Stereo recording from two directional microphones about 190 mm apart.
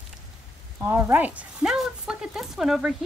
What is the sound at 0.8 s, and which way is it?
A woman's voice, 10° right (ahead or behind).